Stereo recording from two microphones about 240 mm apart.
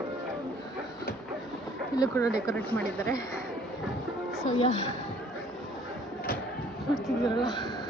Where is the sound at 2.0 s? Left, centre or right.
Centre.